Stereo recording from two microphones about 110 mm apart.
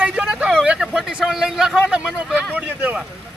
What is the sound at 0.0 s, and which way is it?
Vehicle, 10° right (ahead or behind).